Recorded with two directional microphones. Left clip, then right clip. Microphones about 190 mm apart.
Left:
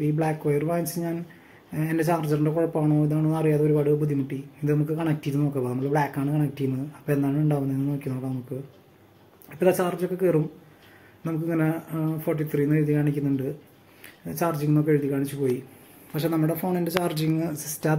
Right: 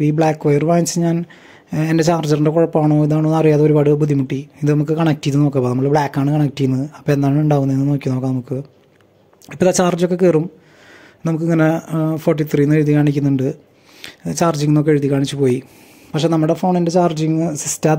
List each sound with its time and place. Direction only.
0.0 s speech: 40° right (ahead or behind)
9.5 s speech: 40° right (ahead or behind)
14.2 s speech: 35° right (ahead or behind)
16.1 s speech: 30° right (ahead or behind)